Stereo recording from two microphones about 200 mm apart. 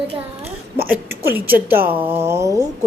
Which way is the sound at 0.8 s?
10° right (ahead or behind).